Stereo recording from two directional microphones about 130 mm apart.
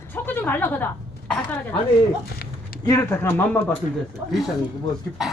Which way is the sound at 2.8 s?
20° left (ahead or behind).